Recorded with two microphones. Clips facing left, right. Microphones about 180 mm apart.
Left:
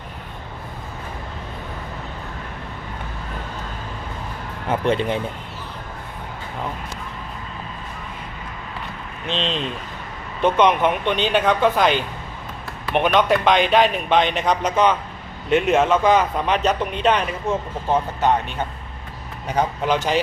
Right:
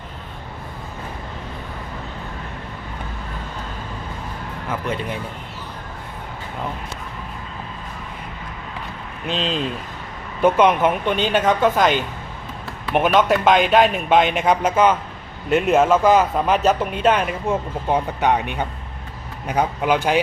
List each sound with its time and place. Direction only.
4.7 s speech: 25° left (ahead or behind)
9.2 s a man's voice: 5° right (ahead or behind)
12.9 s a man's voice: 5° right (ahead or behind)